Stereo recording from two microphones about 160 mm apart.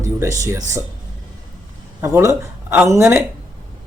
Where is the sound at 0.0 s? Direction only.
20° right (ahead or behind).